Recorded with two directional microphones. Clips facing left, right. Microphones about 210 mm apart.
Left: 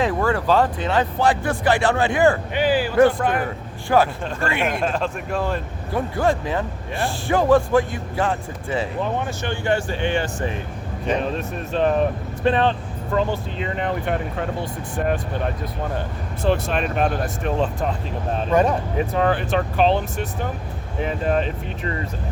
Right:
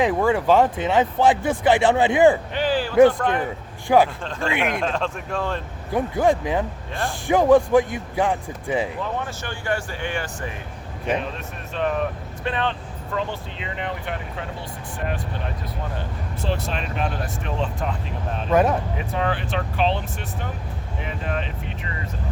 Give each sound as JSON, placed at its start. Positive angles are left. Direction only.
{"t": 0.0, "sound": "speech", "side_deg": -15}
{"t": 2.5, "sound": "a sound", "side_deg": 10}
{"t": 3.2, "sound": "speech", "side_deg": 5}
{"t": 3.8, "sound": "speech", "side_deg": -15}
{"t": 4.2, "sound": "speech", "side_deg": 10}
{"t": 4.4, "sound": "speech", "side_deg": -15}
{"t": 4.8, "sound": "speech", "side_deg": 5}
{"t": 5.9, "sound": "speech", "side_deg": -15}
{"t": 9.0, "sound": "speech", "side_deg": 20}
{"t": 11.2, "sound": "speech", "side_deg": 35}
{"t": 16.4, "sound": "speech", "side_deg": 55}
{"t": 18.5, "sound": "speech", "side_deg": -5}
{"t": 18.9, "sound": "speech", "side_deg": 45}